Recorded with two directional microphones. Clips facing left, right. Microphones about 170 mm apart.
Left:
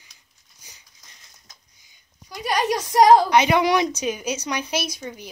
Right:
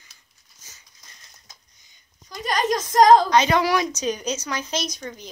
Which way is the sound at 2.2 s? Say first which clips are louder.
Left 1 dB; 10° left (ahead or behind).